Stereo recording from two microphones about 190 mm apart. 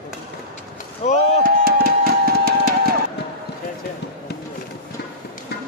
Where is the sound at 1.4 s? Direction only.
55° right (ahead or behind).